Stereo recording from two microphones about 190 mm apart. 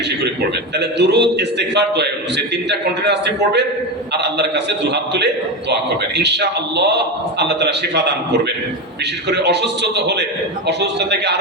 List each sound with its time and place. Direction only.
0.8 s a man's voice: 60° right (ahead or behind)
9.3 s a man's voice: 60° right (ahead or behind)